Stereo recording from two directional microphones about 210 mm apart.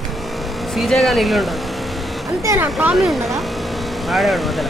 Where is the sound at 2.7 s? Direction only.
Centre (ahead or behind).